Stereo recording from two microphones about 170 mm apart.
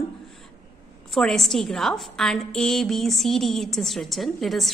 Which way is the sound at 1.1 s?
Centre (ahead or behind).